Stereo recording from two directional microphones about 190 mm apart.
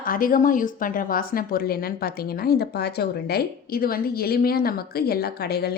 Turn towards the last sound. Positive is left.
turn(degrees=55)  # may be behind; listen again after turning